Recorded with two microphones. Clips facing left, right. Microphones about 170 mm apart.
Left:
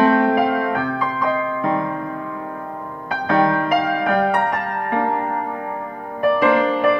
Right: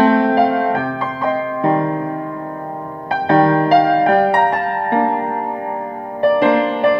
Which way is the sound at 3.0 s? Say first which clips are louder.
Right 5 dB; 30° right (ahead or behind).